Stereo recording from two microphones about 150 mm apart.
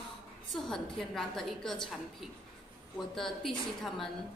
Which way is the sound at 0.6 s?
Centre (ahead or behind).